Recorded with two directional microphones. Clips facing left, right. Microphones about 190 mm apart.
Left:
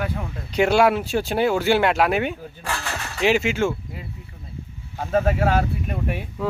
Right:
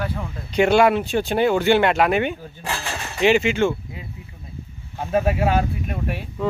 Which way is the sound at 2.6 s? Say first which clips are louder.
Right 1 dB; 20° right (ahead or behind).